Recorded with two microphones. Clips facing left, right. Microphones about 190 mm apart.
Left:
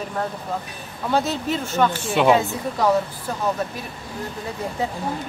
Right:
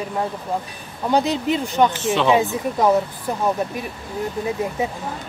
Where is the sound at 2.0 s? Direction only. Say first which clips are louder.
Even; 10° left (ahead or behind).